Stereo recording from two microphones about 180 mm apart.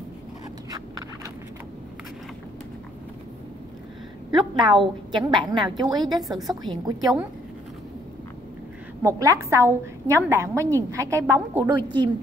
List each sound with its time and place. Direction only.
4.4 s a woman's voice: 25° right (ahead or behind)
6.3 s a woman's voice: centre (ahead or behind)
6.6 s a woman's voice: 20° right (ahead or behind)
9.0 s a woman's voice: 15° right (ahead or behind)